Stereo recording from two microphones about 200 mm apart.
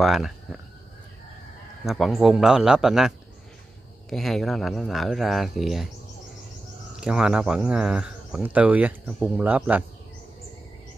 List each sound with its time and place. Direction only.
0.0 s speech: centre (ahead or behind)
1.9 s speech: centre (ahead or behind)
7.0 s a man's voice: 5° right (ahead or behind)